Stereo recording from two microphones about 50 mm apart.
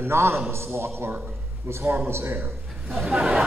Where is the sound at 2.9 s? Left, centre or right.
Centre.